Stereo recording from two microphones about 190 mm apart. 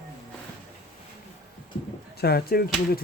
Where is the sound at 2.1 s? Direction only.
55° left (ahead or behind).